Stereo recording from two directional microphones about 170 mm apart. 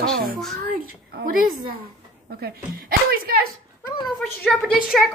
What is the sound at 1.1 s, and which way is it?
Speech, 55° right (ahead or behind).